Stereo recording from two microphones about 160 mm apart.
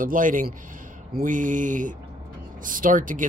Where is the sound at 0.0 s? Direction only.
55° right (ahead or behind).